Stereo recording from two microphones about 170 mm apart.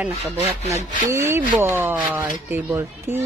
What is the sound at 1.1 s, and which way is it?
Speech, 15° right (ahead or behind).